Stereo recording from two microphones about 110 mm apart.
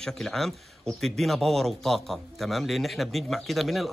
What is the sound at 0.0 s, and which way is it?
Speech, 5° left (ahead or behind).